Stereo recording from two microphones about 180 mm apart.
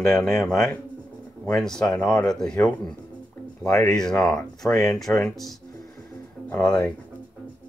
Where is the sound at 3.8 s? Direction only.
5° left (ahead or behind).